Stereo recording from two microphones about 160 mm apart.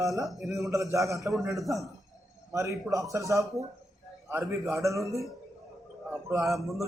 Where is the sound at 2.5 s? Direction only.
20° right (ahead or behind).